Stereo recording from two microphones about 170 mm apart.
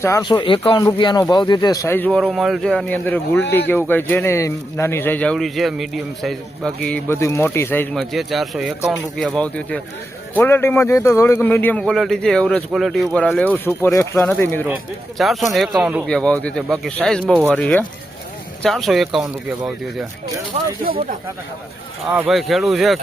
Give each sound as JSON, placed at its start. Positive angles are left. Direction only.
{"t": 0.0, "sound": "speech", "side_deg": 20}
{"t": 2.2, "sound": "speech", "side_deg": 0}
{"t": 7.9, "sound": "speech", "side_deg": 0}
{"t": 15.2, "sound": "speech", "side_deg": 0}
{"t": 16.0, "sound": "speech", "side_deg": 5}
{"t": 20.8, "sound": "speech", "side_deg": -60}
{"t": 22.1, "sound": "speech", "side_deg": 0}